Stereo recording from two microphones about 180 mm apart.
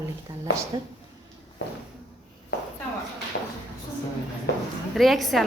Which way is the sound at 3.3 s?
60° left (ahead or behind).